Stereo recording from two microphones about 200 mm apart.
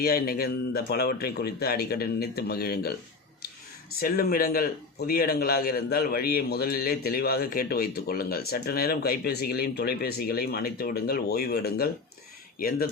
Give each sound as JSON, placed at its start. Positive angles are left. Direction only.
{"t": 0.0, "sound": "a man's voice", "side_deg": 50}
{"t": 4.0, "sound": "a man's voice", "side_deg": 45}